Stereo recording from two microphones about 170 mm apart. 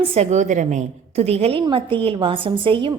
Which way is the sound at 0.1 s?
40° right (ahead or behind).